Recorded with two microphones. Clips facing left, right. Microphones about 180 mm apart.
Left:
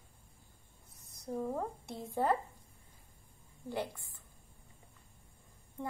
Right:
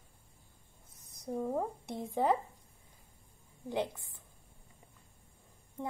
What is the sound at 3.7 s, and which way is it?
Speech, 20° right (ahead or behind).